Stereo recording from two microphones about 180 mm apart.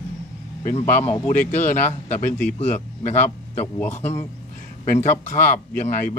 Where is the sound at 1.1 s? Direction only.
45° left (ahead or behind).